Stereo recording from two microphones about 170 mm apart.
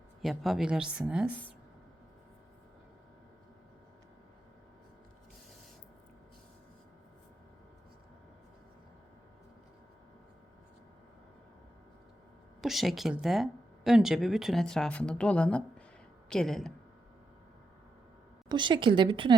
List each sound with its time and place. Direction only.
0.2 s speech: centre (ahead or behind)
12.6 s speech: centre (ahead or behind)
18.4 s a woman's voice: 25° right (ahead or behind)